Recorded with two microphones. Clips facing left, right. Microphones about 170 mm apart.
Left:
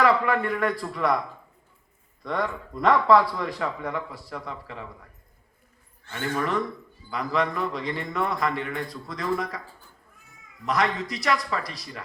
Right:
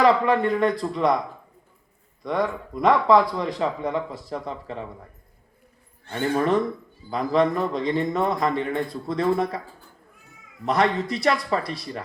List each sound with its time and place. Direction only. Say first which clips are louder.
0.0 s speech: right 3 dB; 20° right (ahead or behind)
2.2 s speech: right 4 dB; 15° right (ahead or behind)
6.1 s speech: right 6 dB; 30° right (ahead or behind)
10.7 s speech: right 4 dB; 30° right (ahead or behind)